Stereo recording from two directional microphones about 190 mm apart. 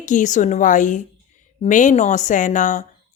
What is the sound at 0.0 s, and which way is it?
Speech, 40° left (ahead or behind).